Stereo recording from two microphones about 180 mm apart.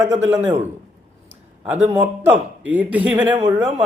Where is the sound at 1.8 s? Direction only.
20° right (ahead or behind).